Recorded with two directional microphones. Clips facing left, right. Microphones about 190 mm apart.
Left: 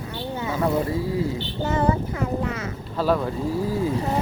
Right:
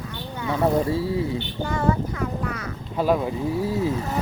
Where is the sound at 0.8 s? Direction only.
25° right (ahead or behind).